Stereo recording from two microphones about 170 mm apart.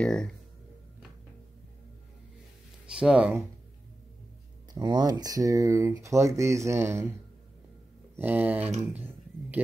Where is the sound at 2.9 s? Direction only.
5° right (ahead or behind).